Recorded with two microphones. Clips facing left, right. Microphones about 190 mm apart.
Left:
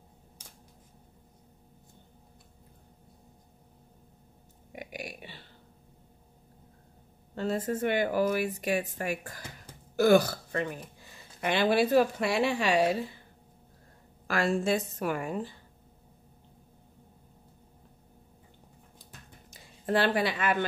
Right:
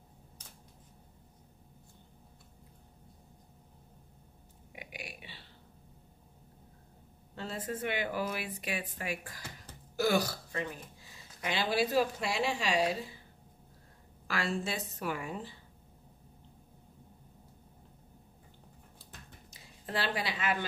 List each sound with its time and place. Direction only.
4.7 s a sound: 45° left (ahead or behind)
7.3 s a woman's voice: 45° left (ahead or behind)
14.2 s speech: 50° left (ahead or behind)
19.5 s a woman's voice: 55° left (ahead or behind)